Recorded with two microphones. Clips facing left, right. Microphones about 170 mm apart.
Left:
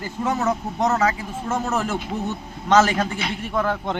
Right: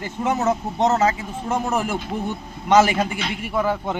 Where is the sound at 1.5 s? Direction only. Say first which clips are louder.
Right 1 dB; 15° right (ahead or behind).